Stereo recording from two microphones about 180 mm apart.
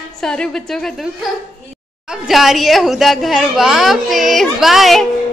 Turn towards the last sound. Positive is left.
turn(degrees=0)  # may be behind; listen again after turning